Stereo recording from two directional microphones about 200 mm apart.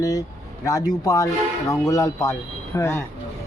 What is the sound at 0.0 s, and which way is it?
A man's voice, 20° left (ahead or behind).